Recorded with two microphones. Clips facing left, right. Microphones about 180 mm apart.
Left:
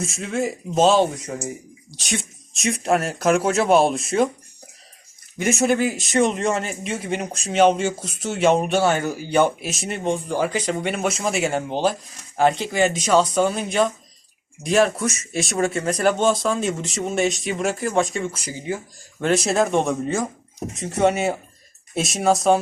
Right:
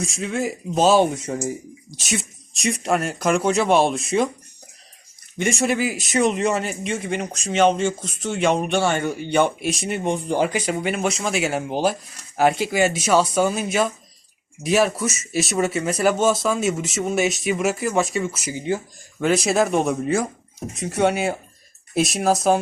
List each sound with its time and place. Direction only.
0.0 s speech: centre (ahead or behind)
2.0 s speech: centre (ahead or behind)
5.4 s speech: 5° left (ahead or behind)
10.0 s speech: 20° right (ahead or behind)
10.6 s speech: 5° right (ahead or behind)
18.5 s speech: 25° right (ahead or behind)
19.2 s speech: centre (ahead or behind)